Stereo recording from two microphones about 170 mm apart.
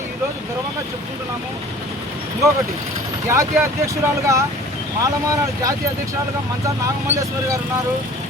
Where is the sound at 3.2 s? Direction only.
15° right (ahead or behind).